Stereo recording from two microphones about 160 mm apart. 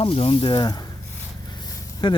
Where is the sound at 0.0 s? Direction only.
35° left (ahead or behind).